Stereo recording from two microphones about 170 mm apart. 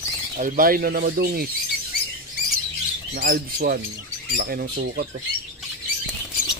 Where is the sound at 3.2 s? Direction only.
60° right (ahead or behind).